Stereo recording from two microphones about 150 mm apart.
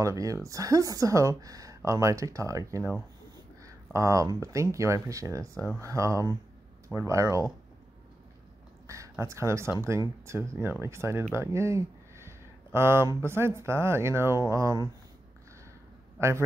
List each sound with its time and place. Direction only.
0.0 s speech: 20° right (ahead or behind)
8.8 s a sound: 20° right (ahead or behind)
9.2 s speech: 20° right (ahead or behind)
16.2 s speech: 15° right (ahead or behind)